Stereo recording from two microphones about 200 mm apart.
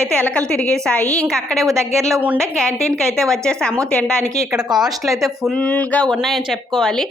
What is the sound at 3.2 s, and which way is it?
A woman's voice, 5° left (ahead or behind).